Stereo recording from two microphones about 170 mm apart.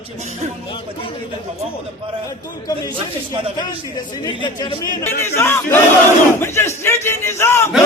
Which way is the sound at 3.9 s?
25° left (ahead or behind).